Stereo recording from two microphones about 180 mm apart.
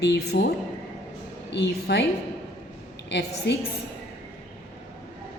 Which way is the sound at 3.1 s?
75° left (ahead or behind).